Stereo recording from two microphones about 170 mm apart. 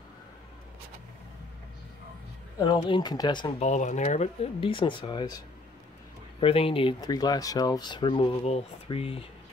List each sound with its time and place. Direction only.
2.6 s speech: 30° left (ahead or behind)
3.5 s speech: 45° left (ahead or behind); by 5.4 s 25° left (ahead or behind)
6.4 s speech: 35° left (ahead or behind)